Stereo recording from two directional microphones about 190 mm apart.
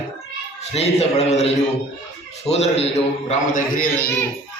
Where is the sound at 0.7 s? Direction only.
35° left (ahead or behind).